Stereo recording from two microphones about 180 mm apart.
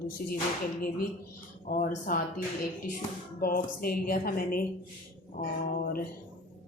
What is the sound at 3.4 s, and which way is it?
A woman's voice, 55° left (ahead or behind).